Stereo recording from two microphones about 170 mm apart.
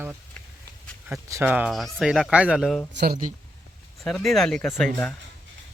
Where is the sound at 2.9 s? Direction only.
80° right.